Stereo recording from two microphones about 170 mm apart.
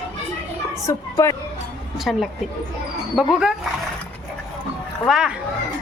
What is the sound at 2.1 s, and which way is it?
A woman's voice, centre (ahead or behind).